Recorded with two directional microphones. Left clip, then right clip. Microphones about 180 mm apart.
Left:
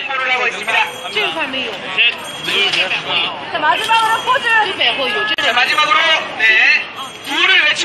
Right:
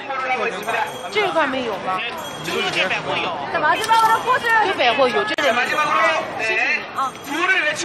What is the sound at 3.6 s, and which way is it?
Speech, 45° left (ahead or behind).